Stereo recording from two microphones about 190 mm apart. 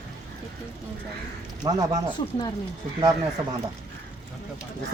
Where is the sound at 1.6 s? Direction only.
20° right (ahead or behind).